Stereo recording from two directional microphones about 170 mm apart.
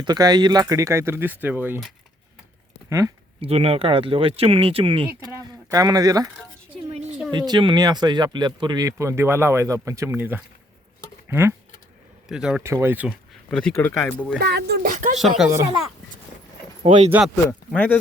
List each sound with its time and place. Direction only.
0.0 s speech: 25° right (ahead or behind)
3.4 s speech: 35° right (ahead or behind)
5.3 s speech: 20° right (ahead or behind)
12.3 s speech: 5° right (ahead or behind)
12.6 s speech: 15° right (ahead or behind)
13.5 s speech: 5° left (ahead or behind)
14.3 s speech: 75° right (ahead or behind)
14.8 s a sound: 45° right (ahead or behind)
15.4 s speech: 20° right (ahead or behind)
17.1 s speech: 5° right (ahead or behind)